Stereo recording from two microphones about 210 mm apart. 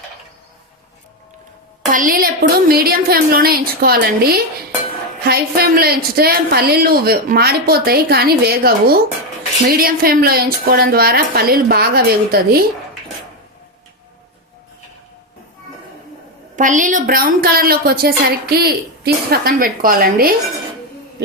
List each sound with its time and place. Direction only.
1.9 s a woman's voice: 40° right (ahead or behind)
16.6 s a woman's voice: 40° right (ahead or behind)